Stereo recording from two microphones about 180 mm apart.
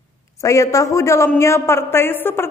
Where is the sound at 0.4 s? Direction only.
15° left (ahead or behind).